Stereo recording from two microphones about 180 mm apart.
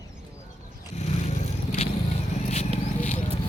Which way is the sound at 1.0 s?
40° left (ahead or behind).